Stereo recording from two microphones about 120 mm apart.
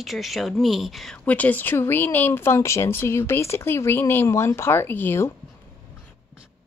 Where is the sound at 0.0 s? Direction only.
Centre (ahead or behind); by 5.3 s 20° left (ahead or behind).